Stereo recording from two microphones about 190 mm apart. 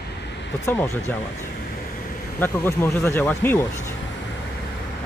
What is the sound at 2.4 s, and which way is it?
Speech, 10° left (ahead or behind).